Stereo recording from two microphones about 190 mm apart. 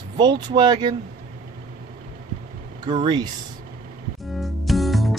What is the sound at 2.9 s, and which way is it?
Speech, 25° right (ahead or behind).